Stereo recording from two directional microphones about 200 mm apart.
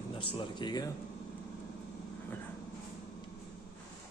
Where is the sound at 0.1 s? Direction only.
25° left (ahead or behind).